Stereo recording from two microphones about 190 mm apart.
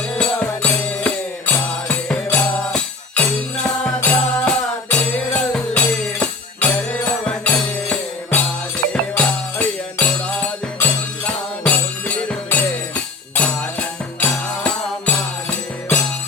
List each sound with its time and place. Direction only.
0.2 s music: 5° left (ahead or behind)